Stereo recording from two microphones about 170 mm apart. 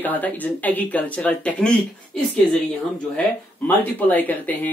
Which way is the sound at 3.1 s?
10° left (ahead or behind).